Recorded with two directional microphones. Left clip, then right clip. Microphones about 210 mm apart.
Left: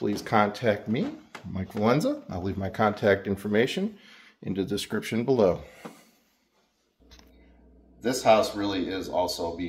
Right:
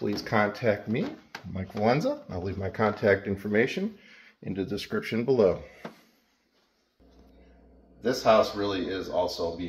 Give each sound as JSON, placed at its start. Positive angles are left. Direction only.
{"t": 0.0, "sound": "speech", "side_deg": 5}
{"t": 8.1, "sound": "speech", "side_deg": 0}